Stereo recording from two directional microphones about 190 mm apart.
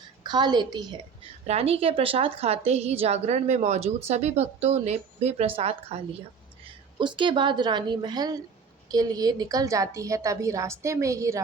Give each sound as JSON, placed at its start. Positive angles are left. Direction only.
{"t": 0.2, "sound": "a woman's voice", "side_deg": -20}
{"t": 1.5, "sound": "a woman's voice", "side_deg": -30}